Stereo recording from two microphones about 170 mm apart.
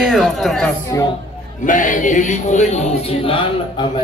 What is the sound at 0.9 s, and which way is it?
Speech, 20° left (ahead or behind).